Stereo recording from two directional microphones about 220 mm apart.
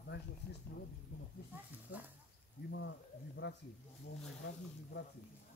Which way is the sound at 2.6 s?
55° left (ahead or behind).